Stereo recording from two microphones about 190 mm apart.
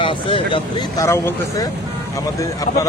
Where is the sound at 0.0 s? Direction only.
25° left (ahead or behind).